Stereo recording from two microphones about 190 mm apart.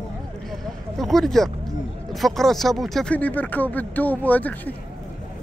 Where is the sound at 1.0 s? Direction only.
Centre (ahead or behind).